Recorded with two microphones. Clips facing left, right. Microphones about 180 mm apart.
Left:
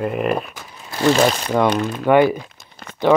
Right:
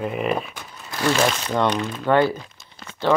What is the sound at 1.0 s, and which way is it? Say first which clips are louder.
Speech: left 5 dB; 30° left (ahead or behind).